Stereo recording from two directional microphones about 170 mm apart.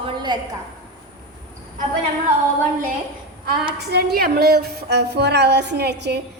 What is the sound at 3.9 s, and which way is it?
A woman's voice, 70° right (ahead or behind).